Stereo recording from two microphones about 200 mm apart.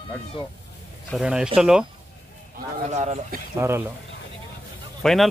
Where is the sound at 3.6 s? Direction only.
10° right (ahead or behind).